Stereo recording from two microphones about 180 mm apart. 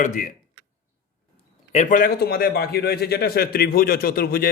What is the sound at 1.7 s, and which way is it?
A man's voice, 40° left (ahead or behind).